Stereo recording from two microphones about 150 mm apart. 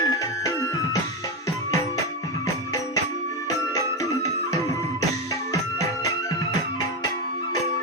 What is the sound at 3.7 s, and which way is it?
Music, 25° left (ahead or behind).